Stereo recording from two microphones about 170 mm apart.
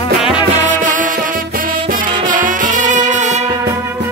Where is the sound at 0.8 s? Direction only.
50° right (ahead or behind).